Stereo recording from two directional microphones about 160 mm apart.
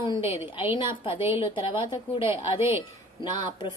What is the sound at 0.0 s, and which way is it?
A woman's voice, 35° left (ahead or behind).